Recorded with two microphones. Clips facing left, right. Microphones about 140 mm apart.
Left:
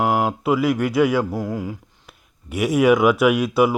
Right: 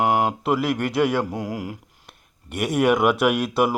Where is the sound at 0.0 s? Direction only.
15° right (ahead or behind).